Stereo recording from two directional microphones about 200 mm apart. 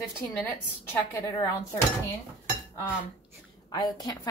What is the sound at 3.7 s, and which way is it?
Speech, 20° left (ahead or behind).